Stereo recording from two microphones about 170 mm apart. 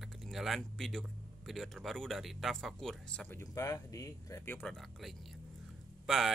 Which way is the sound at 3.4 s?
20° left (ahead or behind).